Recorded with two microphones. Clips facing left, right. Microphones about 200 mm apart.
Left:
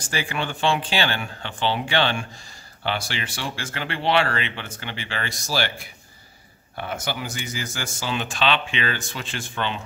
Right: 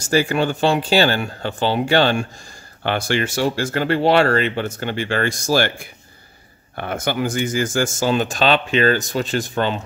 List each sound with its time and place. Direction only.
0.0 s speech: 40° right (ahead or behind)
2.8 s speech: 50° right (ahead or behind)